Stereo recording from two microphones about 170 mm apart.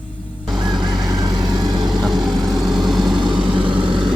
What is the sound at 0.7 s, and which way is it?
Fowl, 25° right (ahead or behind).